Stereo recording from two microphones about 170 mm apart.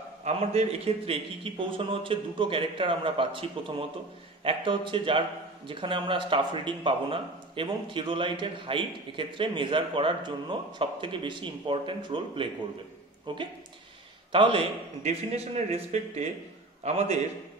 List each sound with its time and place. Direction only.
0.2 s a man's voice: 40° right (ahead or behind)